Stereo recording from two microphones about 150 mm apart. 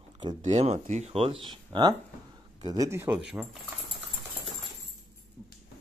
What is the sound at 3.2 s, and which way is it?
Speech, 5° right (ahead or behind).